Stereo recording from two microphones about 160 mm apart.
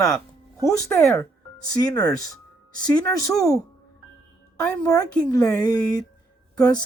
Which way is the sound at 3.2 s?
20° left (ahead or behind).